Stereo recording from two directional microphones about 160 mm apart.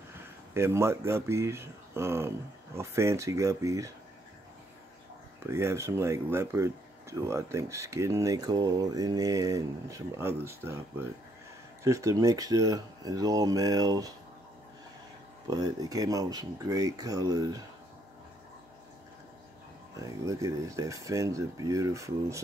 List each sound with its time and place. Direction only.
0.6 s speech: 15° right (ahead or behind)
5.5 s speech: 15° right (ahead or behind)
11.8 s speech: 20° right (ahead or behind)
15.4 s speech: 25° right (ahead or behind)
20.0 s speech: 20° right (ahead or behind)